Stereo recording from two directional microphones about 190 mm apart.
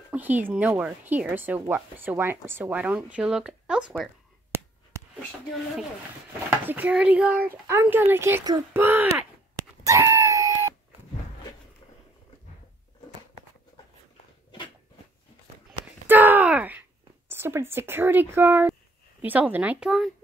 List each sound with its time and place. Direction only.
0.1 s speech: 10° right (ahead or behind)
6.6 s speech: 10° right (ahead or behind)
9.6 s screaming: 20° right (ahead or behind)
16.1 s a sound: 10° right (ahead or behind)
17.3 s speech: 10° right (ahead or behind)